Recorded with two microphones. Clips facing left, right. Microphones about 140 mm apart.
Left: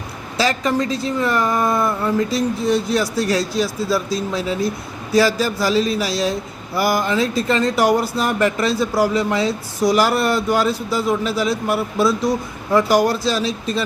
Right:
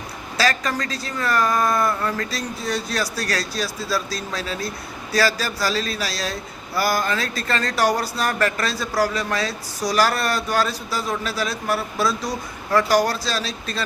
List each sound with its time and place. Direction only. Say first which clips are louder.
0.3 s speech: left 4 dB; 20° left (ahead or behind)